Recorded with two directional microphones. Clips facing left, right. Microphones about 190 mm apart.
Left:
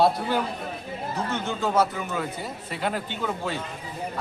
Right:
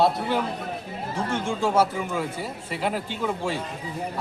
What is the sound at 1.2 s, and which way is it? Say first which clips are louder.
Speech: right 3 dB; 30° right (ahead or behind).